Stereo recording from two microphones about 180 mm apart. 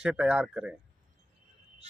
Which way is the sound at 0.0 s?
5° right (ahead or behind).